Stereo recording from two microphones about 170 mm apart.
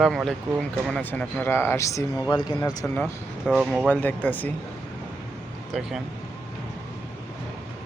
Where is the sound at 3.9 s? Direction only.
10° left (ahead or behind).